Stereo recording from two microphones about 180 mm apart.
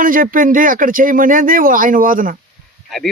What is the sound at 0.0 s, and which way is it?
Speech, 50° right (ahead or behind).